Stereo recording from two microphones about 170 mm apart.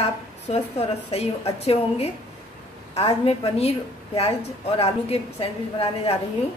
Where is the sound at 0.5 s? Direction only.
35° left (ahead or behind).